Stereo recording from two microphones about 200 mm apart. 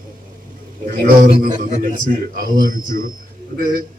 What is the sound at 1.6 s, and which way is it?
A man's voice, 40° right (ahead or behind).